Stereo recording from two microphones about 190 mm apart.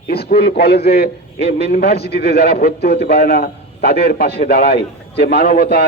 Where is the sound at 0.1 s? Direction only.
55° left (ahead or behind).